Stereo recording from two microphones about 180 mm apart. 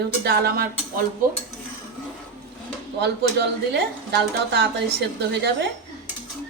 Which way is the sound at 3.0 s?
65° right (ahead or behind).